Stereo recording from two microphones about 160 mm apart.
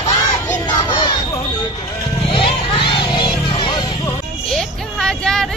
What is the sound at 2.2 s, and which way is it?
Children playing, 35° left (ahead or behind).